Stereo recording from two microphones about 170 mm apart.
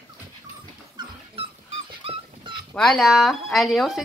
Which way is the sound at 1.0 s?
25° right (ahead or behind).